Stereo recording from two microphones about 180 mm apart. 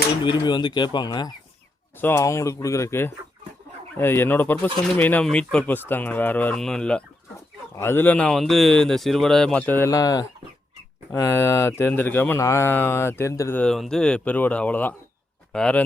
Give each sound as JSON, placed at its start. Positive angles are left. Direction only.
{"t": 0.2, "sound": "speech", "side_deg": 25}